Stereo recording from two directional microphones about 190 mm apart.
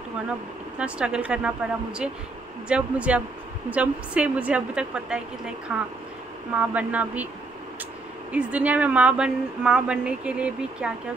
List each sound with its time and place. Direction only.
0.7 s a woman's voice: 5° right (ahead or behind)
8.3 s a woman's voice: 5° right (ahead or behind)